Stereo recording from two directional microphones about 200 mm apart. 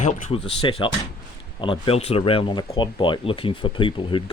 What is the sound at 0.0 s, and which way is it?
Speech, 30° left (ahead or behind).